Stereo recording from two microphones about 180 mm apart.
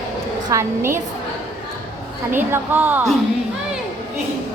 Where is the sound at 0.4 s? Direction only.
15° right (ahead or behind).